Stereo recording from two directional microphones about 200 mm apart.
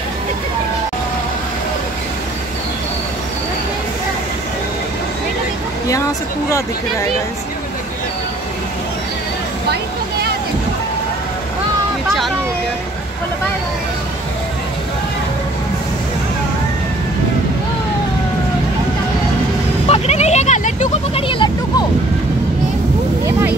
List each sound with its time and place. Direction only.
19.9 s vehicle: 30° left (ahead or behind)